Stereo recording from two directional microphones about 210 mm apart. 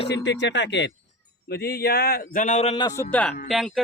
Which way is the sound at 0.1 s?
60° left (ahead or behind).